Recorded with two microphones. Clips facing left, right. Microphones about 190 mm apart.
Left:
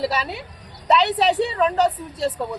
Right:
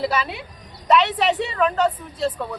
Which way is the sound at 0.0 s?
35° left (ahead or behind).